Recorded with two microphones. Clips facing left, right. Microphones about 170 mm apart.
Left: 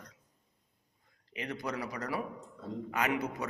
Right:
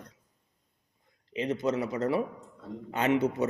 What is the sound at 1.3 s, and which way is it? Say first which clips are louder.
A man's voice: right 9 dB; 20° right (ahead or behind).